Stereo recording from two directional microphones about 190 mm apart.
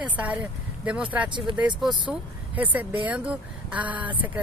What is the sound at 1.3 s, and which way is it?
Speech, 25° right (ahead or behind).